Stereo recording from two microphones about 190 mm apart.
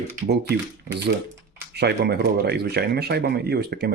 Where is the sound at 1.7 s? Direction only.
60° right (ahead or behind).